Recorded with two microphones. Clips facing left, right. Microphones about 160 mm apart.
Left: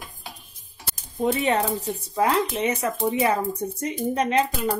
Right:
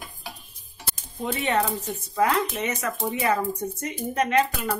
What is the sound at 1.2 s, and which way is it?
Speech, 35° left (ahead or behind).